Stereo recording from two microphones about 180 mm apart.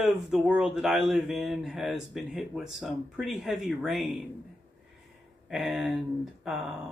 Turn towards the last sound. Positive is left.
turn(degrees=-5)  # may be behind; listen again after turning